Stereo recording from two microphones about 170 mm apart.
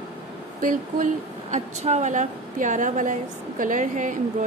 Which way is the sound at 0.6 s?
50° right (ahead or behind).